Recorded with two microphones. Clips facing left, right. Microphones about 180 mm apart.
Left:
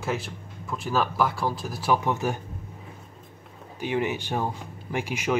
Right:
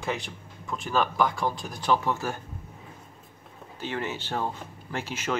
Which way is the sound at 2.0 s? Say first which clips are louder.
Left 3 dB; 15° left (ahead or behind).